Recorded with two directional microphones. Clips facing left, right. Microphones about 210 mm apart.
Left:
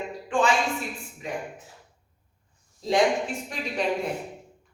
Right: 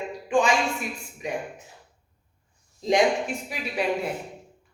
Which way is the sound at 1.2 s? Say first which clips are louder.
Right 3 dB; 15° right (ahead or behind).